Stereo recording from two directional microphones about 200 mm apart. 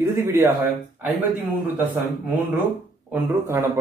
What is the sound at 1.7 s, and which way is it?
Speech, 10° right (ahead or behind).